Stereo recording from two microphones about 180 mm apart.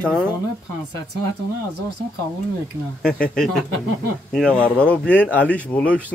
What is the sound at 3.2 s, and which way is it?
Speech, 5° left (ahead or behind).